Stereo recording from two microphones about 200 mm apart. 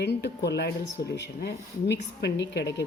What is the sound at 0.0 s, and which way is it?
Speech, 55° left (ahead or behind).